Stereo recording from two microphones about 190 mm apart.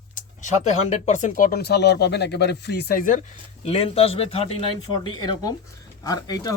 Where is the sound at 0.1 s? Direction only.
40° left (ahead or behind).